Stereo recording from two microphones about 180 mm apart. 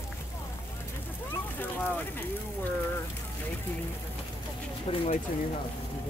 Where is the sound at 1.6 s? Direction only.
10° left (ahead or behind).